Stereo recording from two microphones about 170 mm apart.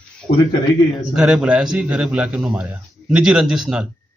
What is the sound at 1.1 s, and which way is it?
A man's voice, 5° right (ahead or behind).